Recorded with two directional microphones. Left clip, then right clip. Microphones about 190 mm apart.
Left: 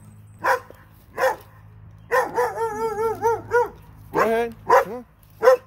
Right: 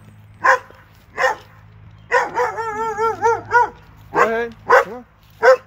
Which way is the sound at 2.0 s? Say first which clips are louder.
Right 3 dB; 55° left (ahead or behind).